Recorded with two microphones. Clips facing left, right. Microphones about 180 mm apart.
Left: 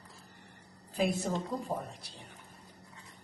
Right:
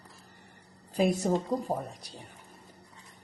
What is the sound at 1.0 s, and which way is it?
A woman's voice, 40° right (ahead or behind).